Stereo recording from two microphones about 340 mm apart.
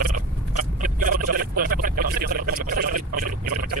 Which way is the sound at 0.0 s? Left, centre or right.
Right.